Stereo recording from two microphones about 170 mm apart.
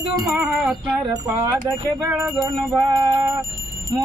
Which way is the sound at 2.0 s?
5° right (ahead or behind).